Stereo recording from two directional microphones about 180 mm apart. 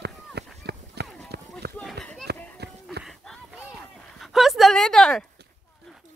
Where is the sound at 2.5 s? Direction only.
65° right (ahead or behind).